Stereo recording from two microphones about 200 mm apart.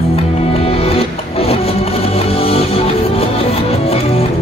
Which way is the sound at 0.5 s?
30° left (ahead or behind).